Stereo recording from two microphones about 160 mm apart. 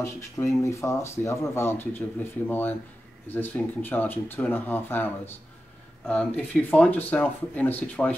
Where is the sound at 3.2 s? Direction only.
10° left (ahead or behind).